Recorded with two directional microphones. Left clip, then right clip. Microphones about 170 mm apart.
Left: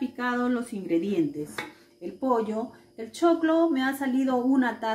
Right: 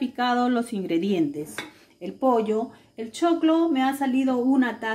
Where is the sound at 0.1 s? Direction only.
65° right (ahead or behind).